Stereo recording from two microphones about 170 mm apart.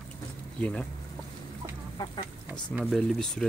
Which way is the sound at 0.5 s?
5° left (ahead or behind).